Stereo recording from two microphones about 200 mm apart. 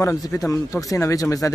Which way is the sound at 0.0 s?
15° left (ahead or behind).